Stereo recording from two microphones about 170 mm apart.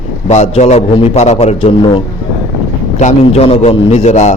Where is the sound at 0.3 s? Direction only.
40° left (ahead or behind).